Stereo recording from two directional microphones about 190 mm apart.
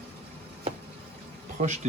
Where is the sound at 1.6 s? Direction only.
35° right (ahead or behind).